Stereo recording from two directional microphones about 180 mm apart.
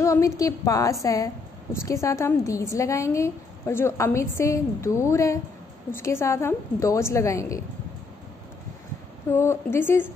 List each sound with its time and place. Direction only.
0.0 s a woman's voice: 15° left (ahead or behind)
9.3 s a woman's voice: 15° left (ahead or behind)